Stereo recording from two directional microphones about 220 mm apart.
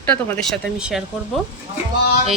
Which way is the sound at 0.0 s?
5° left (ahead or behind).